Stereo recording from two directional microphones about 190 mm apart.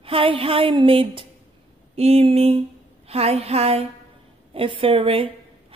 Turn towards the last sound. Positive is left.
turn(degrees=-30)  # may be behind; listen again after turning